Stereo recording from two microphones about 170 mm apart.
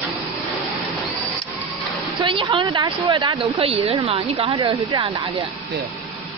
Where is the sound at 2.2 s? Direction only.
30° right (ahead or behind).